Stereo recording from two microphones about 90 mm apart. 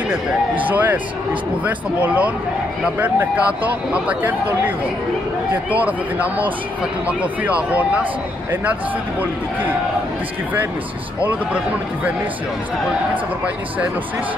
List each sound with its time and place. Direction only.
0.1 s speech: 20° right (ahead or behind)
11.2 s speech: 15° right (ahead or behind)